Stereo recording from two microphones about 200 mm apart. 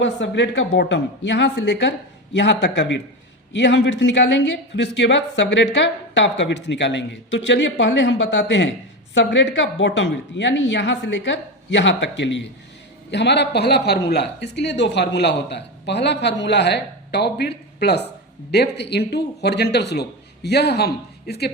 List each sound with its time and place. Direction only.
0.0 s speech: 65° left (ahead or behind)